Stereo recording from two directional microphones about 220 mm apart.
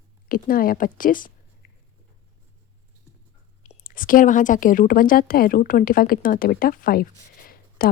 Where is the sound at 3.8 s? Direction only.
40° left (ahead or behind).